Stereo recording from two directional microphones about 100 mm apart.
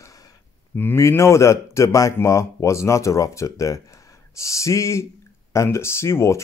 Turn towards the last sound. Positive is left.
turn(degrees=25)  # may be behind; listen again after turning